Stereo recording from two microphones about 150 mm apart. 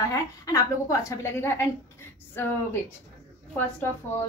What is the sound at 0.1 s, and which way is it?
A woman's voice, 20° left (ahead or behind).